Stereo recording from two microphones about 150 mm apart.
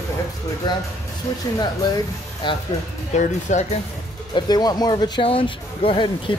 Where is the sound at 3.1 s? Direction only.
50° left (ahead or behind).